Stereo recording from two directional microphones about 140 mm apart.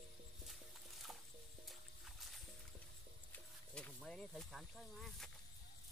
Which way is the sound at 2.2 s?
Centre (ahead or behind).